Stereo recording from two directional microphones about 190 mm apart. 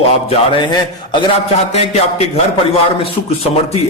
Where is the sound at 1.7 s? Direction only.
35° left (ahead or behind).